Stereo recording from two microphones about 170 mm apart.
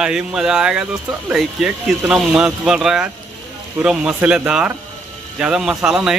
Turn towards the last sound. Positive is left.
turn(degrees=-5)  # may be behind; listen again after turning